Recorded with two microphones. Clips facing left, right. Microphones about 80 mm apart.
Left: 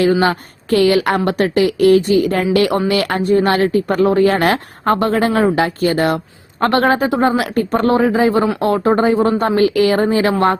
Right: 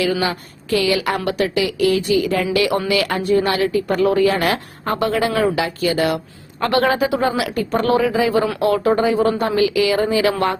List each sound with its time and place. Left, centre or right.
0.0 s a woman's voice: left